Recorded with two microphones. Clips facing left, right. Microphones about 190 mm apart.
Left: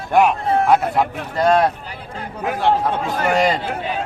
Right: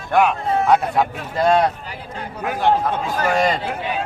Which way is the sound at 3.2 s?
20° left (ahead or behind).